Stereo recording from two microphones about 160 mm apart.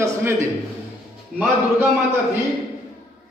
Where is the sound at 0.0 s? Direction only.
15° right (ahead or behind).